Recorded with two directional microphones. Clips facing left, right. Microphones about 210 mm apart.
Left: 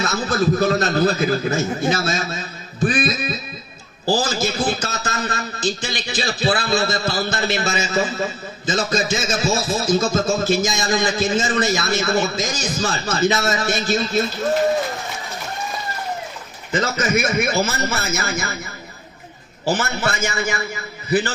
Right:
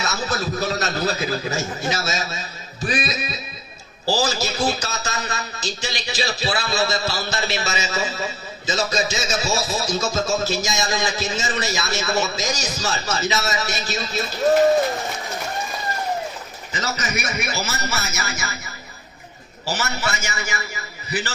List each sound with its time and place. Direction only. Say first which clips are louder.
0.0 s a man's voice: left 5 dB; 55° left (ahead or behind)
16.7 s a man's voice: left 7 dB; 55° left (ahead or behind)
19.6 s a man's voice: left 5 dB; 55° left (ahead or behind)